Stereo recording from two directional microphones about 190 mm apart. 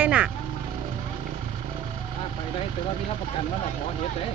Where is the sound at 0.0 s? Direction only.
5° right (ahead or behind).